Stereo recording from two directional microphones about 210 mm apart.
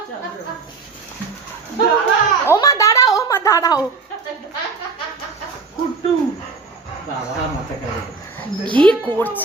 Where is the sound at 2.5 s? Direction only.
15° left (ahead or behind).